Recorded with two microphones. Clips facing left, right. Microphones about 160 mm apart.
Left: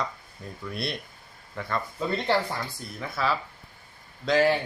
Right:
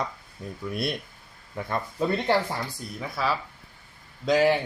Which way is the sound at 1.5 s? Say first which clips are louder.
Right 1 dB; 15° right (ahead or behind).